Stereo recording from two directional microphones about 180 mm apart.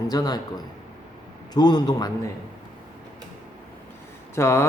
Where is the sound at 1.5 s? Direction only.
25° left (ahead or behind).